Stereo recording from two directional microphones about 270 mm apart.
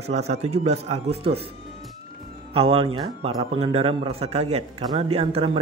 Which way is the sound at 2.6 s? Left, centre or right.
Centre.